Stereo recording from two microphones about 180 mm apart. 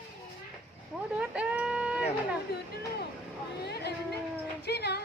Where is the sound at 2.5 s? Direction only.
60° left (ahead or behind).